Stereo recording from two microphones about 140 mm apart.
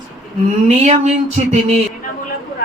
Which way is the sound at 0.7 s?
55° right (ahead or behind).